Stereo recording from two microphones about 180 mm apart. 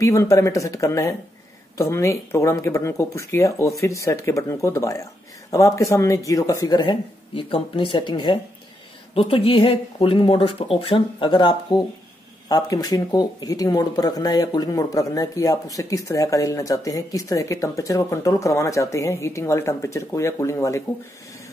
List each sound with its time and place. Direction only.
0.0 s speech: 15° left (ahead or behind)